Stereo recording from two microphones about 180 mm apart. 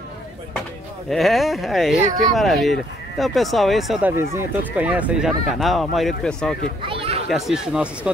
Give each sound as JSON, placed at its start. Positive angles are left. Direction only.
{"t": 1.1, "sound": "speech", "side_deg": 0}
{"t": 4.2, "sound": "speech", "side_deg": -15}
{"t": 6.9, "sound": "a sound", "side_deg": -30}
{"t": 7.2, "sound": "speech", "side_deg": 0}